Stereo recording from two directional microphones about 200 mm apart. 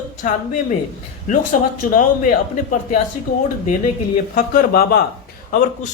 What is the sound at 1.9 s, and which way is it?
Speech, 40° left (ahead or behind).